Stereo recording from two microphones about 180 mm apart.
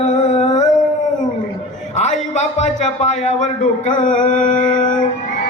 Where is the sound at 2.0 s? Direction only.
40° left (ahead or behind).